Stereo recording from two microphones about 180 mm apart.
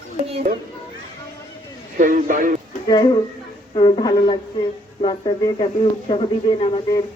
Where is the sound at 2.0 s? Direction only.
45° right (ahead or behind).